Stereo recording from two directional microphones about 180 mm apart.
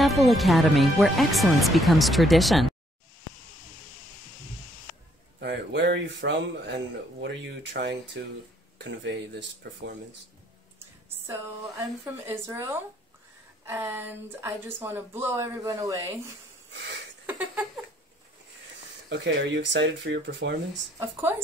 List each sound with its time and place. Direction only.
0.0 s speech: centre (ahead or behind)
5.4 s speech: 75° right (ahead or behind)
9.6 s speech: 80° right
12.4 s a woman's voice: 15° right (ahead or behind)
19.0 s speech: 80° right
21.0 s a woman's voice: 10° right (ahead or behind)